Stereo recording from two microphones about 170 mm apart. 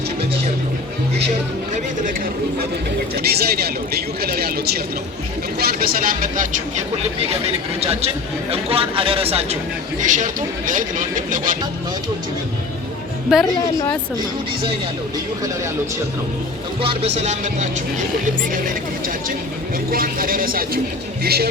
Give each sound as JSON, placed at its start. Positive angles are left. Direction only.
{"t": 3.2, "sound": "speech", "side_deg": -70}
{"t": 10.0, "sound": "speech", "side_deg": -50}
{"t": 13.4, "sound": "a woman's voice", "side_deg": 20}
{"t": 16.8, "sound": "speech", "side_deg": -35}
{"t": 19.9, "sound": "speech", "side_deg": -55}